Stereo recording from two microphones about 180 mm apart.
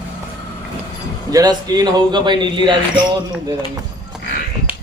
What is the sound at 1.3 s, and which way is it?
A man's voice, 20° right (ahead or behind).